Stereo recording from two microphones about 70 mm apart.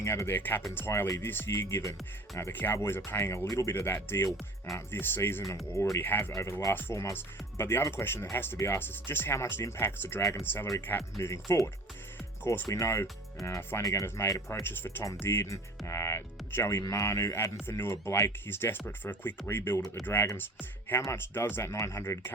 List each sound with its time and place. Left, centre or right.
0.0 s speech: left
1.8 s speech: left
2.5 s speech: left
6.3 s speech: left
10.9 s speech: left
14.6 s speech: left
21.1 s speech: left